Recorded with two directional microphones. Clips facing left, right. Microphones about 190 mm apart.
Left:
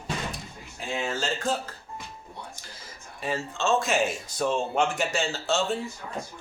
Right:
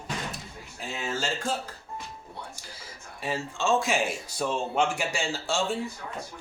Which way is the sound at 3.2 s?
10° right (ahead or behind).